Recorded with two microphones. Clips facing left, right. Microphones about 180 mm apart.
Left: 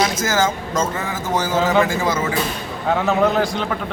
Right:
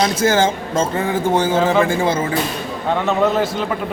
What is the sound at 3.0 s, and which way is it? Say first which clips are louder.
Speech: right 1 dB; centre (ahead or behind).